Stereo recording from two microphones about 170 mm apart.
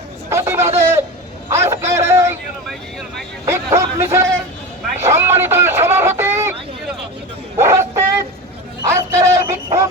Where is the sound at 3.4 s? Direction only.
15° right (ahead or behind).